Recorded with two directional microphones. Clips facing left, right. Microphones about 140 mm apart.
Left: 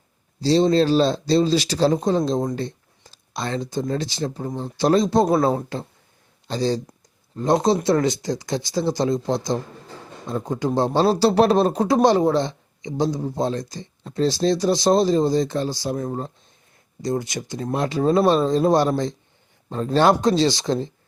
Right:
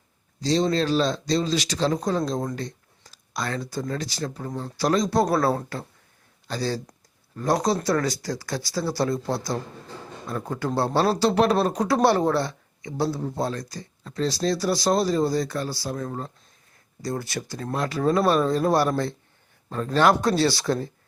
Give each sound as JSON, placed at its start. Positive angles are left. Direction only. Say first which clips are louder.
{"t": 0.3, "sound": "speech", "louder": "left 5 dB", "side_deg": 30}
{"t": 11.2, "sound": "speech", "louder": "left 5 dB", "side_deg": 30}
{"t": 11.9, "sound": "speech", "louder": "left 3 dB", "side_deg": 15}
{"t": 19.7, "sound": "speech", "louder": "left 3 dB", "side_deg": 30}